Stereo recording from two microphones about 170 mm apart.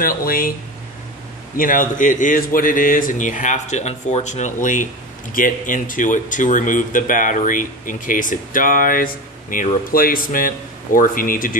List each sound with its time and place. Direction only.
0.0 s speech: 60° left (ahead or behind)
1.6 s speech: 55° left (ahead or behind)